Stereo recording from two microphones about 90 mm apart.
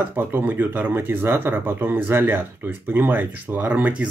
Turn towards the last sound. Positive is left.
turn(degrees=-20)  # may be behind; listen again after turning